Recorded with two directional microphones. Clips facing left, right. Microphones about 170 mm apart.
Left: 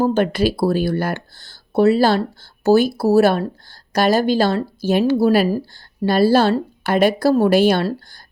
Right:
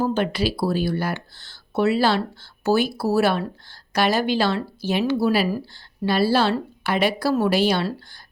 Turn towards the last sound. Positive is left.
turn(degrees=50)  # may be behind; listen again after turning